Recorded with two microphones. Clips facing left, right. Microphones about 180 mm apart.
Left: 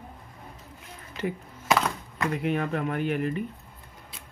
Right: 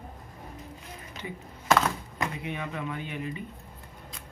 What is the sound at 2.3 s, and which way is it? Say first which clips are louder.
Speech: left 8 dB; 60° left (ahead or behind).